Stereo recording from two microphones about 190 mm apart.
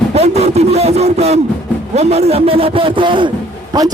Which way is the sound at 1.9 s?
35° right (ahead or behind).